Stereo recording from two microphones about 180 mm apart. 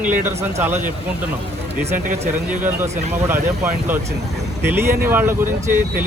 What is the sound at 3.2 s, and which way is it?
Speech, 15° right (ahead or behind).